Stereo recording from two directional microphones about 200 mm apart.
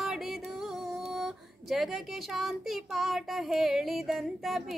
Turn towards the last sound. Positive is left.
turn(degrees=0)  # may be behind; listen again after turning